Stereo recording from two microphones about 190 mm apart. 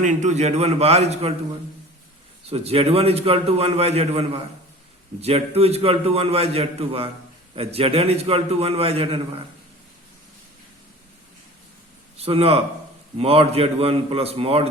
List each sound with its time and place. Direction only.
0.0 s a man's voice: 40° right (ahead or behind)
2.5 s a man's voice: 30° right (ahead or behind)
12.1 s a man's voice: 30° right (ahead or behind)